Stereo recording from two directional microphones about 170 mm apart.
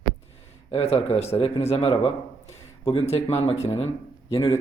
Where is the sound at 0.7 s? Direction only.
35° left (ahead or behind).